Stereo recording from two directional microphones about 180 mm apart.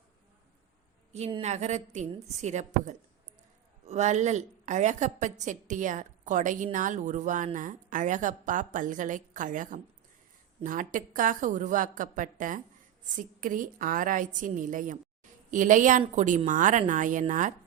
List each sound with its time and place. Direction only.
1.4 s a woman's voice: 40° right (ahead or behind)